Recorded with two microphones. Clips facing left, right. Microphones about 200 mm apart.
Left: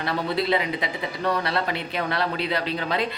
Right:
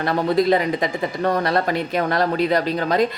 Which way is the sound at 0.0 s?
45° right (ahead or behind).